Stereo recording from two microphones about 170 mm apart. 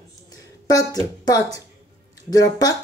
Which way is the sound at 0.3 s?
20° left (ahead or behind).